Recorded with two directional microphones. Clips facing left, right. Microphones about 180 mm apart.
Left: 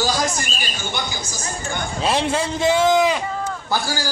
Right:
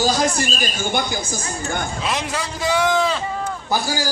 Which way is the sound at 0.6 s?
50° right (ahead or behind).